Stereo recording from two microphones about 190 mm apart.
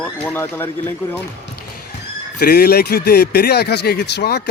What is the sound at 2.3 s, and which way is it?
Speech, 55° left (ahead or behind).